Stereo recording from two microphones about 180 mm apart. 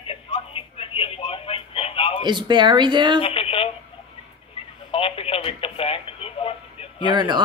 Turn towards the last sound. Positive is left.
turn(degrees=-25)  # may be behind; listen again after turning